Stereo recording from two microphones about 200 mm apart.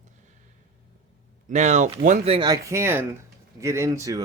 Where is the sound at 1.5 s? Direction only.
35° right (ahead or behind).